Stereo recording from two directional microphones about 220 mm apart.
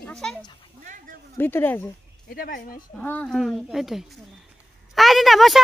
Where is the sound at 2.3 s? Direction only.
40° left (ahead or behind).